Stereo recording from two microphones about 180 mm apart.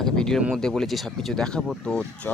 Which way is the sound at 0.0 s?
Centre (ahead or behind).